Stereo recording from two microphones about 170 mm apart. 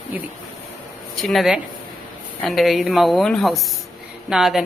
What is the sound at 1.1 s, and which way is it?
A woman's voice, centre (ahead or behind).